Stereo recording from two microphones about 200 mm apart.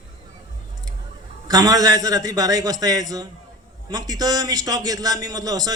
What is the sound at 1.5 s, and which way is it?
A man's voice, 20° right (ahead or behind).